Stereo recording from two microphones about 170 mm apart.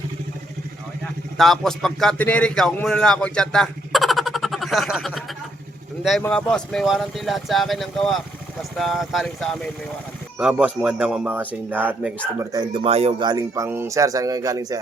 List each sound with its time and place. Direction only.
1.4 s speech: centre (ahead or behind)
12.4 s speech: 20° right (ahead or behind)
12.8 s speech: 35° right (ahead or behind)
13.2 s speech: 25° right (ahead or behind)